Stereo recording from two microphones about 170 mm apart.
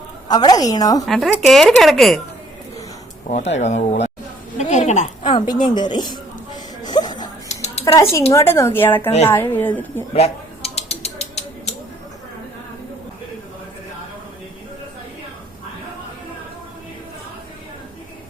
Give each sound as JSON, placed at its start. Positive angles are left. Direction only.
{"t": 0.3, "sound": "a woman's voice", "side_deg": 25}
{"t": 1.0, "sound": "speech", "side_deg": 0}
{"t": 3.2, "sound": "a woman's voice", "side_deg": 45}
{"t": 5.2, "sound": "a woman's voice", "side_deg": 25}
{"t": 6.8, "sound": "music", "side_deg": 25}
{"t": 7.4, "sound": "a sound", "side_deg": 40}
{"t": 7.9, "sound": "speech", "side_deg": 15}
{"t": 10.2, "sound": "mechanisms", "side_deg": 35}